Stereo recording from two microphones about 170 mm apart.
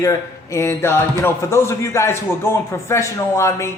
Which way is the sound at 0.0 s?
20° left (ahead or behind).